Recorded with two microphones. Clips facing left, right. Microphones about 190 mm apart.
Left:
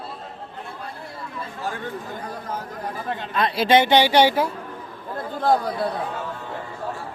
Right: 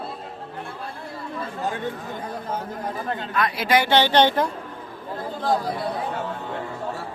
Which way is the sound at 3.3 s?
25° left (ahead or behind).